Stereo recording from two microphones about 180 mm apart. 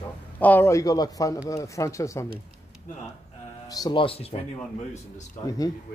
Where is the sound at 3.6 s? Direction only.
20° left (ahead or behind).